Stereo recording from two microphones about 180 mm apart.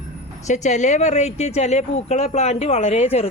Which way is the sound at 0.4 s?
40° left (ahead or behind).